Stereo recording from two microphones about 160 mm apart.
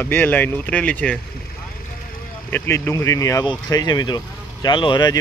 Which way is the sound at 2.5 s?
15° left (ahead or behind).